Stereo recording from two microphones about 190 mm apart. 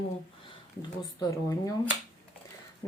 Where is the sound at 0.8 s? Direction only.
20° left (ahead or behind).